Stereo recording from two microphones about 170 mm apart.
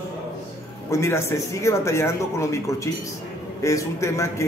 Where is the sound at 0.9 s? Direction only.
15° left (ahead or behind).